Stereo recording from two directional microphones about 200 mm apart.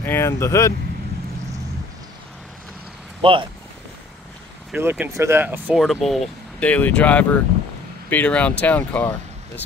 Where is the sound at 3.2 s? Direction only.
25° right (ahead or behind).